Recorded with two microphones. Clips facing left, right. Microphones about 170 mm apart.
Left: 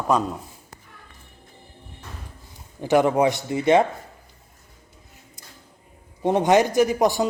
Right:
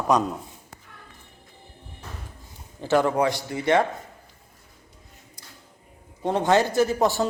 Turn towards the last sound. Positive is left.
turn(degrees=15)  # may be behind; listen again after turning